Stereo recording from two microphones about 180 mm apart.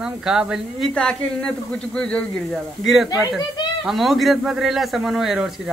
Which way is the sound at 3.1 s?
20° left (ahead or behind).